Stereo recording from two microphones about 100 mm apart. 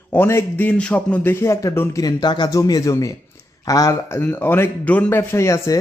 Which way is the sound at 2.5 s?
35° left (ahead or behind).